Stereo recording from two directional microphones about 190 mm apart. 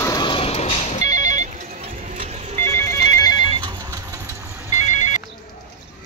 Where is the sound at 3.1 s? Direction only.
20° left (ahead or behind).